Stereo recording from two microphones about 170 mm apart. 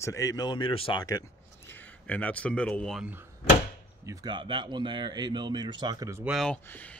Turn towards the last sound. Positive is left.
turn(degrees=10)  # may be behind; listen again after turning